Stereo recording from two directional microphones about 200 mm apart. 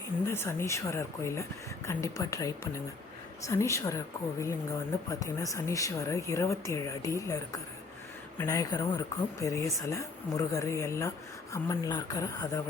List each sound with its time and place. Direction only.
0.3 s a woman's voice: 15° left (ahead or behind)